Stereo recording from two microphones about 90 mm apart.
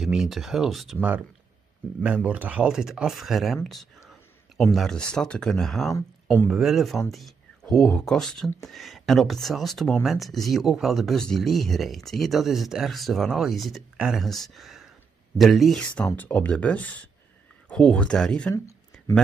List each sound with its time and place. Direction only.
0.0 s speech: 5° right (ahead or behind)
2.0 s speech: 15° right (ahead or behind)
4.7 s speech: 5° left (ahead or behind)
16.2 s speech: 15° left (ahead or behind)